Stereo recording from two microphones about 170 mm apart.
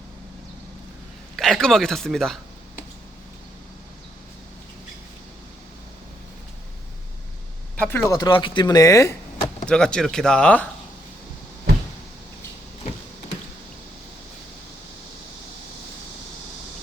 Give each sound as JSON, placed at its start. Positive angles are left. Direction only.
{"t": 1.4, "sound": "speech", "side_deg": 0}
{"t": 7.8, "sound": "speech", "side_deg": 15}
{"t": 9.6, "sound": "speech", "side_deg": 5}